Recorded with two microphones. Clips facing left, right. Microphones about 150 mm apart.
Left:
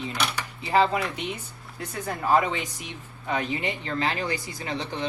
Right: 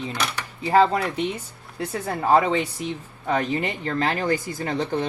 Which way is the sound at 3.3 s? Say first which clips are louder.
Right 4 dB; 45° right (ahead or behind).